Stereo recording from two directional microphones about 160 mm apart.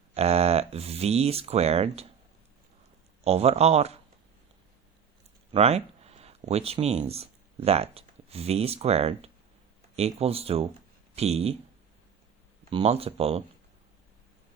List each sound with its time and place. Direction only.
0.1 s speech: 40° right (ahead or behind)
3.2 s speech: 40° right (ahead or behind)
5.5 s speech: 40° right (ahead or behind)
12.7 s speech: 40° right (ahead or behind)